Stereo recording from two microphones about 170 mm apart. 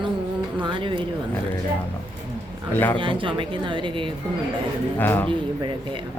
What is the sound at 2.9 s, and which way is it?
A woman's voice, 30° right (ahead or behind).